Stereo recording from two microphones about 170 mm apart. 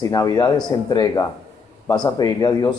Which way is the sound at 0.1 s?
20° left (ahead or behind).